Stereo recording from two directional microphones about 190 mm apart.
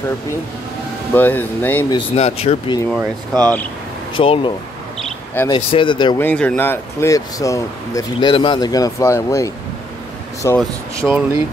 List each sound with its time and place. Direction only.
1.1 s speech: 10° left (ahead or behind)
2.1 s speech: 35° left (ahead or behind)
3.0 s speech: 20° right (ahead or behind)
4.1 s speech: 25° left (ahead or behind)
4.9 s a sound: 5° left (ahead or behind)
5.5 s speech: 25° left (ahead or behind)
6.1 s speech: 10° left (ahead or behind)
11.1 s speech: 10° right (ahead or behind)